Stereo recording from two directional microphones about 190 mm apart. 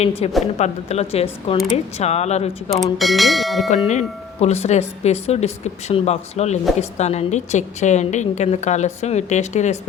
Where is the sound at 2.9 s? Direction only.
Centre (ahead or behind).